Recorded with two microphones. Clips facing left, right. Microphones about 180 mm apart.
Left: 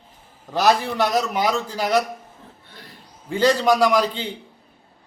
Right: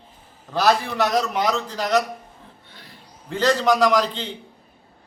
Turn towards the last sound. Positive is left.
turn(degrees=10)  # may be behind; listen again after turning